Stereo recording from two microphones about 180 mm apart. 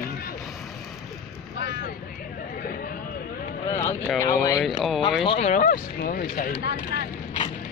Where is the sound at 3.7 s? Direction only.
15° left (ahead or behind).